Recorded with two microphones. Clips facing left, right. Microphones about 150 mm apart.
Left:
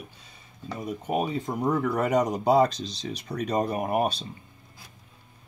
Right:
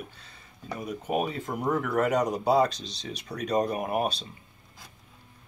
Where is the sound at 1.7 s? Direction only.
35° left (ahead or behind).